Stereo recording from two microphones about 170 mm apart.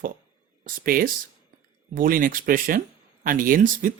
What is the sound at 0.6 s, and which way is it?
Speech, 55° right (ahead or behind).